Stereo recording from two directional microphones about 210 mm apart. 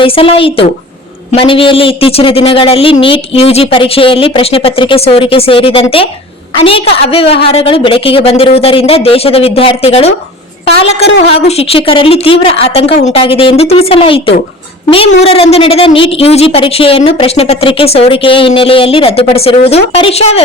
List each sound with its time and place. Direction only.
0.0 s a woman's voice: 25° left (ahead or behind)